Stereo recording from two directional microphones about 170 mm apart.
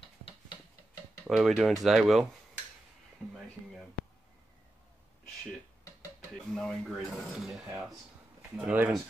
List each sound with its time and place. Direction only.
1.2 s speech: centre (ahead or behind)
6.5 s speech: centre (ahead or behind)